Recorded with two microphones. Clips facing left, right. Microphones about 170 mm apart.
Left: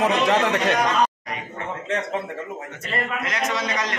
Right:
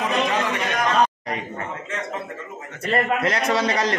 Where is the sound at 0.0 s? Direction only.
75° left (ahead or behind).